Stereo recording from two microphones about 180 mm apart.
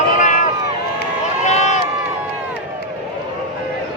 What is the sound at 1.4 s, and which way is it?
Run, 40° left (ahead or behind).